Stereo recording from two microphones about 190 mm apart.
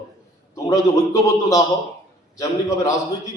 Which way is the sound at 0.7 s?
15° left (ahead or behind).